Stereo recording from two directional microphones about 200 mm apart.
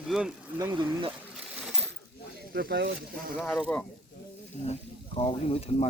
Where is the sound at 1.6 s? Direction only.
Centre (ahead or behind).